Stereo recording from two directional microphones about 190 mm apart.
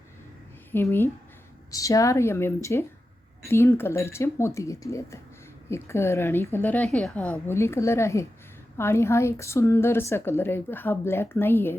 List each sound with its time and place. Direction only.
0.7 s a woman's voice: 15° left (ahead or behind)